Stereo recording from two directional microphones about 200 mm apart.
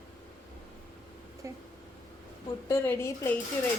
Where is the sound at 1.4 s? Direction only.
15° right (ahead or behind).